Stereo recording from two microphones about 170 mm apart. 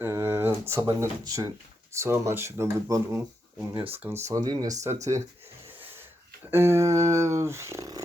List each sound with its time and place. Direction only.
0.0 s a sound: 15° right (ahead or behind)
0.7 s speech: 15° right (ahead or behind)
4.9 s speech: 45° right (ahead or behind)
6.5 s speech: 15° right (ahead or behind)